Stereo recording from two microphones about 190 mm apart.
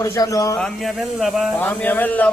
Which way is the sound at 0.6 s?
Centre (ahead or behind).